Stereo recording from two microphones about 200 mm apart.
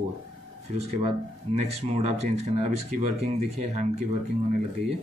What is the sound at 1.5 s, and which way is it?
Speech, 30° right (ahead or behind).